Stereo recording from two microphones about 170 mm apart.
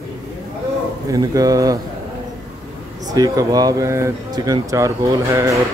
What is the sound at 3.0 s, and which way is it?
Speech, 20° right (ahead or behind).